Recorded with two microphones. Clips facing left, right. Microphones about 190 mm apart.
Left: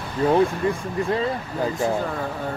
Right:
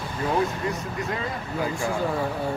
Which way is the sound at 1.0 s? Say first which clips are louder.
Left 6 dB; 30° left (ahead or behind).